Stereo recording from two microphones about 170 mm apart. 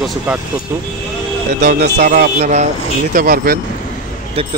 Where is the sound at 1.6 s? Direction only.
60° right (ahead or behind).